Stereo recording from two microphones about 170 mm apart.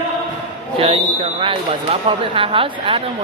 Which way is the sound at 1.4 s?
30° right (ahead or behind).